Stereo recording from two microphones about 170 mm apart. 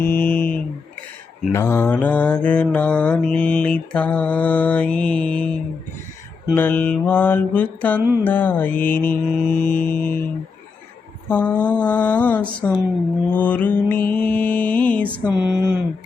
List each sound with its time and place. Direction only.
0.0 s mantra: 10° left (ahead or behind)
11.3 s mantra: 10° left (ahead or behind)
15.3 s speech: 5° right (ahead or behind)